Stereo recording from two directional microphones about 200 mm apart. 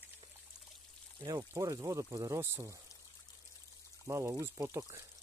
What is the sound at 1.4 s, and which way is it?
Speech, 15° right (ahead or behind).